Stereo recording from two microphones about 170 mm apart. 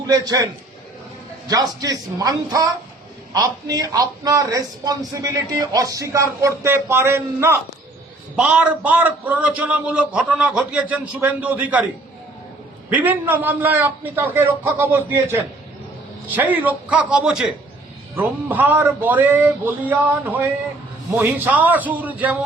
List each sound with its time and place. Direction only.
0.1 s a man's voice: 20° right (ahead or behind)
1.5 s a man's voice: 20° right (ahead or behind)
12.9 s a man's voice: 10° right (ahead or behind)